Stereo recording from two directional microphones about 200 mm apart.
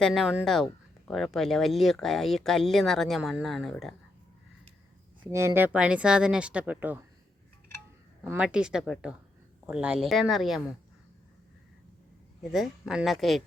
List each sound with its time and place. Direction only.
0.0 s speech: centre (ahead or behind)
5.2 s speech: 15° right (ahead or behind)
8.2 s speech: 5° right (ahead or behind)
12.4 s speech: centre (ahead or behind)